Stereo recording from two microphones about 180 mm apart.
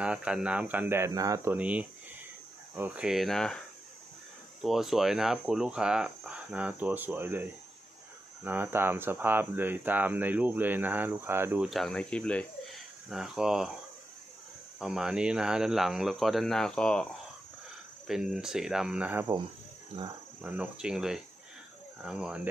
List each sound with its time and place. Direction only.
0.0 s speech: 5° right (ahead or behind)
4.6 s speech: centre (ahead or behind)
8.5 s speech: 10° right (ahead or behind)
14.8 s speech: centre (ahead or behind)
19.9 s speech: 30° right (ahead or behind)
20.4 s speech: 5° right (ahead or behind)